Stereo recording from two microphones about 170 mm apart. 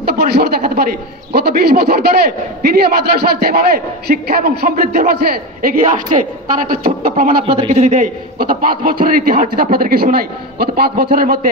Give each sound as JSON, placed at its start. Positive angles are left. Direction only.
{"t": 0.0, "sound": "a man's voice", "side_deg": -65}
{"t": 7.4, "sound": "a man's voice", "side_deg": -35}